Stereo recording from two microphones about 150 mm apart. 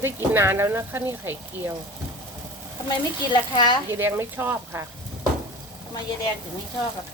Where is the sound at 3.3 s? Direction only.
30° left (ahead or behind).